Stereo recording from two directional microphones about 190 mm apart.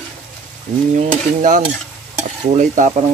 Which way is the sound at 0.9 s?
40° right (ahead or behind).